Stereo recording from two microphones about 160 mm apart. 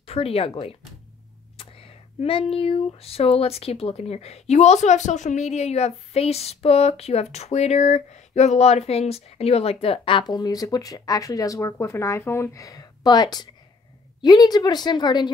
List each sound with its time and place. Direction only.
0.0 s speech: 35° left (ahead or behind)
1.6 s a sound: 35° left (ahead or behind)
14.2 s speech: 25° left (ahead or behind)